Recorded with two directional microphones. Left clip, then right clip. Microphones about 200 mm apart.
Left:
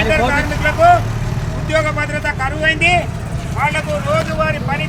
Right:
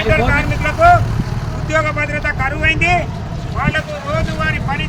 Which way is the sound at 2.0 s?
5° right (ahead or behind).